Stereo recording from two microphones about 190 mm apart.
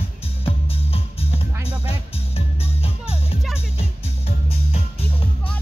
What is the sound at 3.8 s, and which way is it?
Music, 35° left (ahead or behind).